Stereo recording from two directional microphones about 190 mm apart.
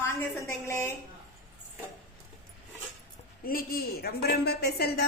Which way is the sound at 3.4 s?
50° left (ahead or behind).